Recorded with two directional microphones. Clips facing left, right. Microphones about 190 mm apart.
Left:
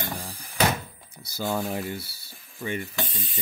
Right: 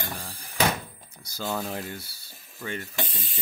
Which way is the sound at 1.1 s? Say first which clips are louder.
Left 3 dB; 10° left (ahead or behind).